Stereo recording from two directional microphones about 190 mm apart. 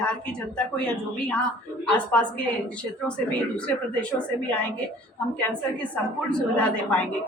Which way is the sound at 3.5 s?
5° left (ahead or behind).